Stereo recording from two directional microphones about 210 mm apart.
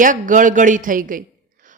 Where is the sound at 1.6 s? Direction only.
40° right (ahead or behind).